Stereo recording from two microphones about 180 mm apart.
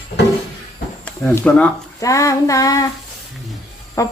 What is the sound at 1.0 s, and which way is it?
Speech, 5° left (ahead or behind).